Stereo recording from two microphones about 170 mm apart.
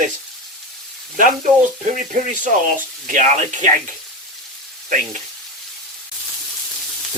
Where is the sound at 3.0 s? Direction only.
50° right (ahead or behind).